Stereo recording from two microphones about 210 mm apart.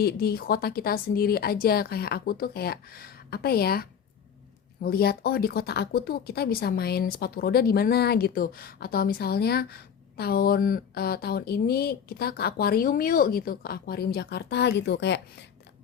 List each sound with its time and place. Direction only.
0.0 s speech: 50° left (ahead or behind)